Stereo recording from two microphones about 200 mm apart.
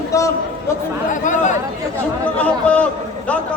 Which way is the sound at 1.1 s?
40° left (ahead or behind).